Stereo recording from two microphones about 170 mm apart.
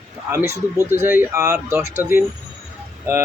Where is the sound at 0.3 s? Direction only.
15° right (ahead or behind).